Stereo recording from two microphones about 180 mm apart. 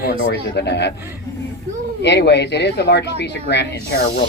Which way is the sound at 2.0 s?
70° left (ahead or behind).